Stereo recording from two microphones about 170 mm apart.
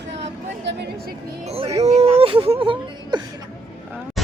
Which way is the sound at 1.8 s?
40° right (ahead or behind).